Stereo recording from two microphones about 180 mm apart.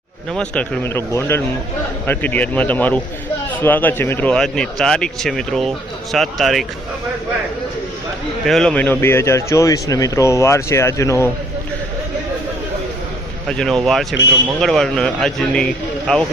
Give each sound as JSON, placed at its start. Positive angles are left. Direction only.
{"t": 0.3, "sound": "speech", "side_deg": 5}
{"t": 8.4, "sound": "speech", "side_deg": 5}
{"t": 13.5, "sound": "speech", "side_deg": 5}